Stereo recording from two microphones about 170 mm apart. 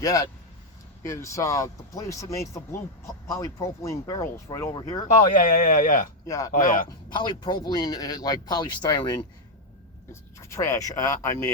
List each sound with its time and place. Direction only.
0.0 s speech: 20° left (ahead or behind)
5.3 s speech: 55° left (ahead or behind)
6.2 s speech: 20° left (ahead or behind)
6.5 s speech: 55° left (ahead or behind)
7.1 s speech: 25° left (ahead or behind)